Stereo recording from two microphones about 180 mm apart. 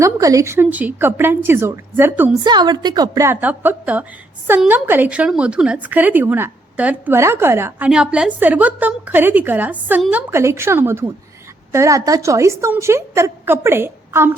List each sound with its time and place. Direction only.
0.0 s a woman's voice: 20° right (ahead or behind)
2.4 s a woman's voice: 25° right (ahead or behind)